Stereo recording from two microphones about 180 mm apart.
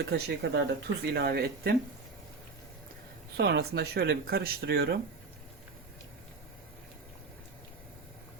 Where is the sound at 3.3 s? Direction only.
65° right (ahead or behind).